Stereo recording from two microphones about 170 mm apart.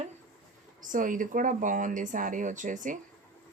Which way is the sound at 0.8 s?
50° right (ahead or behind).